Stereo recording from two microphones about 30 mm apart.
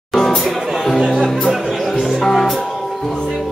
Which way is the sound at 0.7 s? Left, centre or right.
Centre.